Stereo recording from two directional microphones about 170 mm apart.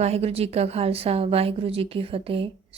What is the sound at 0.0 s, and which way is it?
A woman's voice, 35° right (ahead or behind).